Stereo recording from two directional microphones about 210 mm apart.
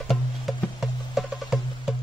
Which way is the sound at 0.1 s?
Centre (ahead or behind).